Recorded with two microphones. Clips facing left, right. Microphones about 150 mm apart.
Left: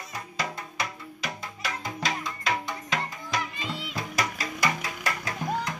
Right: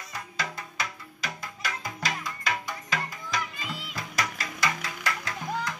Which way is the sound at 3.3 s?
30° left (ahead or behind).